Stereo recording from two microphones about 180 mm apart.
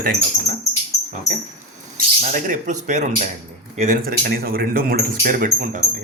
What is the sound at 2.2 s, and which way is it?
Speech, 50° right (ahead or behind).